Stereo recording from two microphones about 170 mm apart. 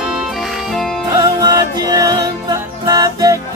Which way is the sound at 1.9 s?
20° right (ahead or behind).